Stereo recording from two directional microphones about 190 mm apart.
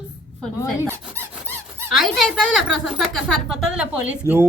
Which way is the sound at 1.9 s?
Centre (ahead or behind).